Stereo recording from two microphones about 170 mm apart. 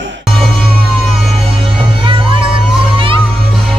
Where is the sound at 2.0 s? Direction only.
30° right (ahead or behind).